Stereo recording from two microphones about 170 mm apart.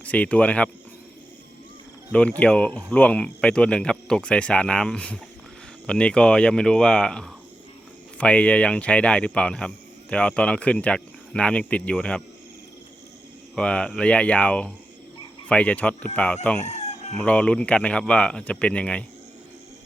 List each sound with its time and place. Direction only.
0.0 s speech: 10° left (ahead or behind)
2.1 s speech: 5° left (ahead or behind)
13.6 s speech: 5° left (ahead or behind)
16.6 s chicken: 40° left (ahead or behind)
17.2 s speech: 5° left (ahead or behind)